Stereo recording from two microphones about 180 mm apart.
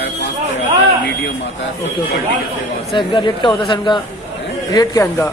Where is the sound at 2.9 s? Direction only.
25° left (ahead or behind).